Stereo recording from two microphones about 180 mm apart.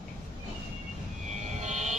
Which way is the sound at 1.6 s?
40° right (ahead or behind).